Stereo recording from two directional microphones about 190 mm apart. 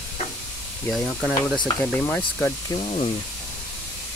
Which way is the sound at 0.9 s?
5° right (ahead or behind).